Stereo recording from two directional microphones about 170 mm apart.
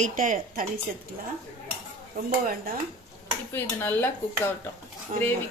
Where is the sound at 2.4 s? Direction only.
55° right (ahead or behind).